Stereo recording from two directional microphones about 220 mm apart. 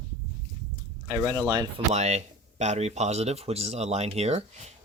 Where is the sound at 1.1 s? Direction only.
15° right (ahead or behind).